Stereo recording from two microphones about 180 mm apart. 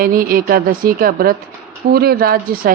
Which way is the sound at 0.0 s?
55° right (ahead or behind).